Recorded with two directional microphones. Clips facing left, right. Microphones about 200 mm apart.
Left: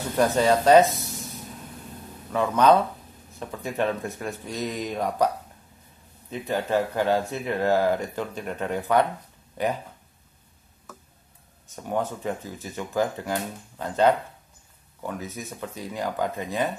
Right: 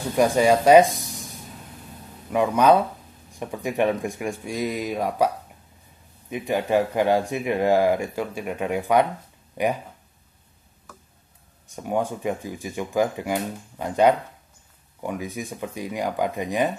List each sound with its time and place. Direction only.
0.1 s speech: 10° right (ahead or behind)
2.3 s speech: 10° right (ahead or behind)
6.3 s speech: 15° right (ahead or behind)
11.7 s speech: 10° right (ahead or behind)